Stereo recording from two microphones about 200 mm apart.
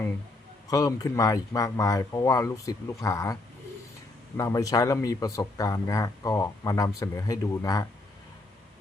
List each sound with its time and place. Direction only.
0.7 s speech: 20° left (ahead or behind)
4.4 s speech: 15° left (ahead or behind)